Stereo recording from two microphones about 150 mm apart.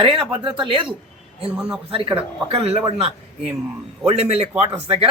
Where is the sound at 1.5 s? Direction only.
5° right (ahead or behind).